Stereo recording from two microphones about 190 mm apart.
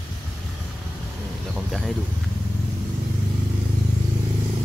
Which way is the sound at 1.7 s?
Centre (ahead or behind).